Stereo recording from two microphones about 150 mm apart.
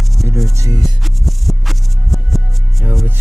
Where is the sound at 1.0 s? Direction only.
Centre (ahead or behind).